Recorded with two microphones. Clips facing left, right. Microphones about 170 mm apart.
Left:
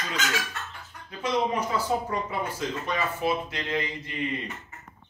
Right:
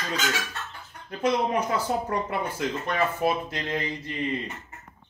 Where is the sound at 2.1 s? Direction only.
60° right (ahead or behind).